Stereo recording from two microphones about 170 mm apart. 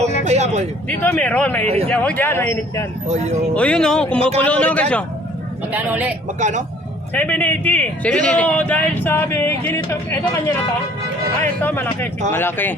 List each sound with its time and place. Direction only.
0.3 s speech: 40° right (ahead or behind)
0.9 s a man's voice: 10° left (ahead or behind)
1.6 s speech: 35° right (ahead or behind)
1.9 s a man's voice: 10° left (ahead or behind)
5.7 s speech: 10° right (ahead or behind)
6.4 s speech: 45° right (ahead or behind)
7.1 s a man's voice: 10° left (ahead or behind)
11.3 s a man's voice: 10° left (ahead or behind)